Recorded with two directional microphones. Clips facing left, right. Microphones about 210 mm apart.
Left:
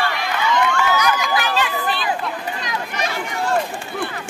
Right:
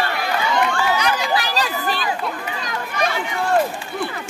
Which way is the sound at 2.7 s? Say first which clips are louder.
Right 4 dB; 50° right (ahead or behind).